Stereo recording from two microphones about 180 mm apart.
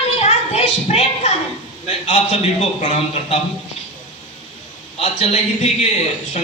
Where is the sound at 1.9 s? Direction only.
40° left (ahead or behind).